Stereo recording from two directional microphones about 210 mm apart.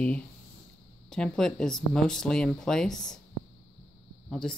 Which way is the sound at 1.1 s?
5° left (ahead or behind).